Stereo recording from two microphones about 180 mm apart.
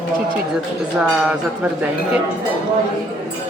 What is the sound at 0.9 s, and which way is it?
Speech, 5° right (ahead or behind).